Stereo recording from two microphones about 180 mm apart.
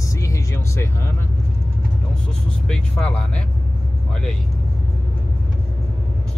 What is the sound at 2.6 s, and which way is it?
Speech, 5° left (ahead or behind).